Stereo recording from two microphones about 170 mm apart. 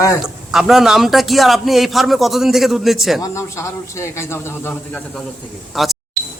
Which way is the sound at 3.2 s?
15° left (ahead or behind).